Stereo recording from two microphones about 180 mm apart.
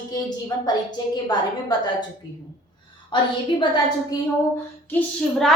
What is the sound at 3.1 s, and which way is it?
A woman's voice, 25° left (ahead or behind).